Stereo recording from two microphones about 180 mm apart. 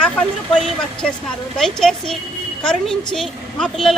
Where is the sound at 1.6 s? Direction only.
Centre (ahead or behind).